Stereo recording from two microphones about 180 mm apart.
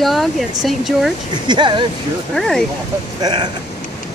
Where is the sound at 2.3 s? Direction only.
Centre (ahead or behind).